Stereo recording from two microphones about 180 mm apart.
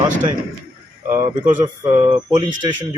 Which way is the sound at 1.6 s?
25° right (ahead or behind).